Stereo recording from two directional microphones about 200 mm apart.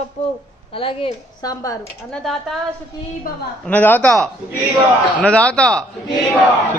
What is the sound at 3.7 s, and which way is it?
A man's voice, 10° left (ahead or behind).